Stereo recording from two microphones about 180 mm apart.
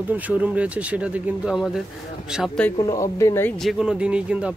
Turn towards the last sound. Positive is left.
turn(degrees=-5)  # may be behind; listen again after turning